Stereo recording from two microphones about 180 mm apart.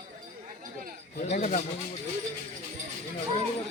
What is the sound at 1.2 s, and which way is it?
Speech, 40° left (ahead or behind).